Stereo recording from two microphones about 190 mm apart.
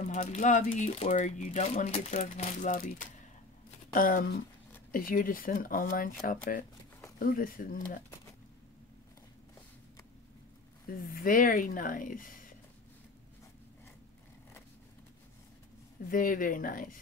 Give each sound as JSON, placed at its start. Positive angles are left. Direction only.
{"t": 0.1, "sound": "speech", "side_deg": 40}
{"t": 10.9, "sound": "speech", "side_deg": 50}
{"t": 16.1, "sound": "speech", "side_deg": 45}